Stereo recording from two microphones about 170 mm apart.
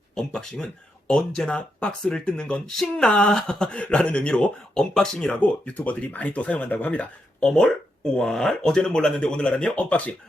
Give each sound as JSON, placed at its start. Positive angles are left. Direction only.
{"t": 0.2, "sound": "speech", "side_deg": 5}